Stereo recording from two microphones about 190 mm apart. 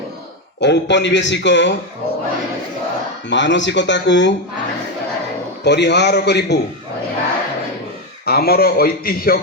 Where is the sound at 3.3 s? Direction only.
70° left (ahead or behind).